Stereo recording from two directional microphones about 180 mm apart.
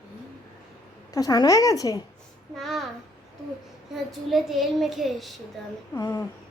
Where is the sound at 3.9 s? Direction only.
Centre (ahead or behind).